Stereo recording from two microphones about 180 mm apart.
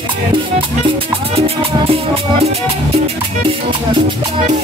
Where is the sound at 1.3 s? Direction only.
35° right (ahead or behind).